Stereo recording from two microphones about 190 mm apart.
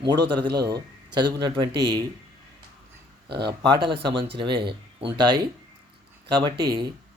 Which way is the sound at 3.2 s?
60° right (ahead or behind).